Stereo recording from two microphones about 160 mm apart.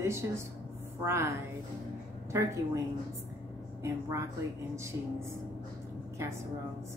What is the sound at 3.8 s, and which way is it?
A woman's voice, 20° right (ahead or behind).